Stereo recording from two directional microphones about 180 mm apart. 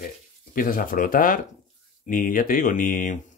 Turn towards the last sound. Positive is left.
turn(degrees=50)  # may be behind; listen again after turning